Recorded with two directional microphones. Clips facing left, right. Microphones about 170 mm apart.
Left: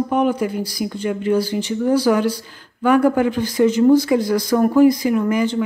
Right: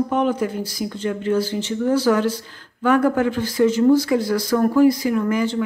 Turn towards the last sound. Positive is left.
turn(degrees=20)  # may be behind; listen again after turning